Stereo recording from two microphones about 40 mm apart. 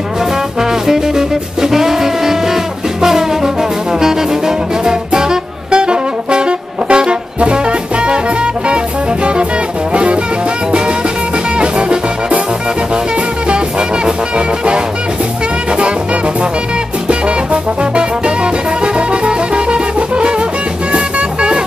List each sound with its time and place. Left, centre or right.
0.6 s music: centre; by 9.5 s right
11.5 s music: right
13.5 s music: right
17.1 s music: right